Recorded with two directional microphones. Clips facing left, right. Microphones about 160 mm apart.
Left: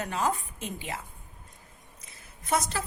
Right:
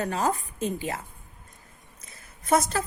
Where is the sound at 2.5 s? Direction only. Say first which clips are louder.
Right 5 dB; 45° right (ahead or behind).